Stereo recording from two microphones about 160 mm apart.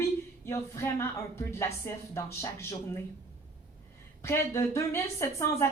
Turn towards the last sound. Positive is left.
turn(degrees=15)  # may be behind; listen again after turning